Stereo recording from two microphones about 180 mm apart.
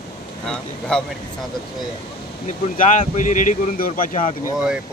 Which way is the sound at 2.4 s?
45° left (ahead or behind).